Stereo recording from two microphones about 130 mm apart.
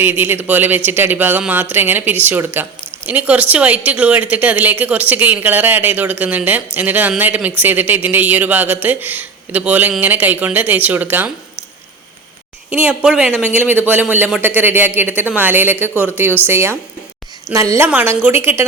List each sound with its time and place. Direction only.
0.0 s a woman's voice: 15° right (ahead or behind)
12.7 s a woman's voice: 10° right (ahead or behind)